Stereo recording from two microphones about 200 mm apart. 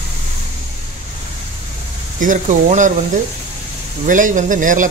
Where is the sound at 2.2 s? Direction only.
40° right (ahead or behind).